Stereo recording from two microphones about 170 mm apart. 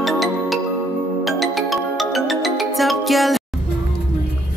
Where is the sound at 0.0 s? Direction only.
Centre (ahead or behind).